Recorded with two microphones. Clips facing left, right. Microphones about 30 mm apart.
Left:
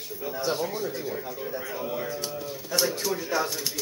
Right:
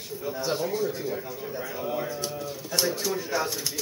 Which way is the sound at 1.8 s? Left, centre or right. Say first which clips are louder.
Right 3 dB; centre.